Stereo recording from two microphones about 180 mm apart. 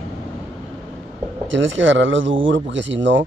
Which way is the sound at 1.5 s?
90° right.